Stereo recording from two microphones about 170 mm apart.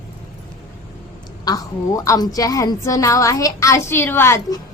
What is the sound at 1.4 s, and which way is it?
A woman's voice, 20° left (ahead or behind).